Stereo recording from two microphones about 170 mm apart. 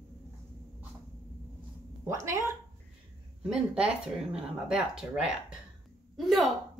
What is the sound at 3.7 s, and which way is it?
Speech, 5° right (ahead or behind).